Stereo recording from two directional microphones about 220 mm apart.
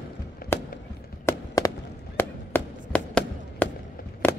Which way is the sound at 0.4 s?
40° left (ahead or behind).